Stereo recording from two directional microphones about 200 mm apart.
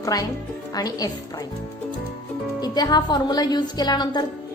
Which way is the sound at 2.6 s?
20° left (ahead or behind).